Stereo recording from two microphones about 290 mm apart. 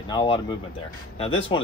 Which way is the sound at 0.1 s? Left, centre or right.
Centre.